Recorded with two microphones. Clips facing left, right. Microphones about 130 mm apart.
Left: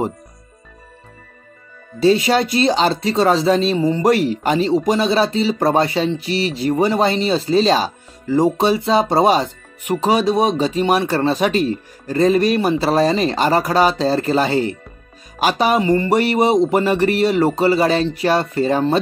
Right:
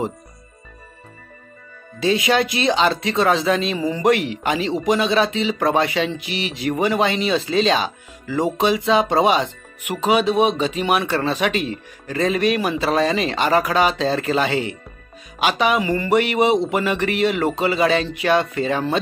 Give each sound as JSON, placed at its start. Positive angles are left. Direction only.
{"t": 2.0, "sound": "speech", "side_deg": 35}